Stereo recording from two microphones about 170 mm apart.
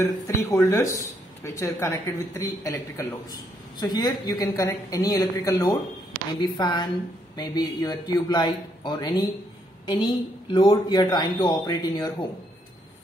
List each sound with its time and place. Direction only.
0.4 s a man's voice: 15° left (ahead or behind)